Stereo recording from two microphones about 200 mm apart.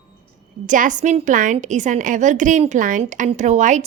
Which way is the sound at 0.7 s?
40° right (ahead or behind).